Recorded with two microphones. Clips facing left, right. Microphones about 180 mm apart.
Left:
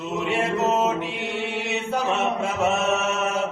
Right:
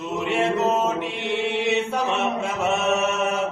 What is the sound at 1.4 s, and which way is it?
Mantra, 60° right (ahead or behind).